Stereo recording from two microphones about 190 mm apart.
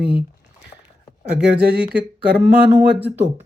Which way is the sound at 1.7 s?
5° right (ahead or behind).